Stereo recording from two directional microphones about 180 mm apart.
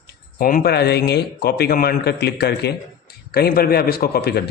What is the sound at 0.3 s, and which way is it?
Speech, 50° left (ahead or behind).